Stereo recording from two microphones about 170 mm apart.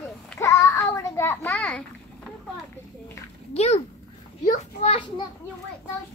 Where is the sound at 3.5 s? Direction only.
40° left (ahead or behind).